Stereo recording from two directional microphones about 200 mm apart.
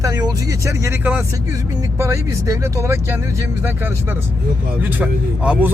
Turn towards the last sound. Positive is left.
turn(degrees=-5)  # may be behind; listen again after turning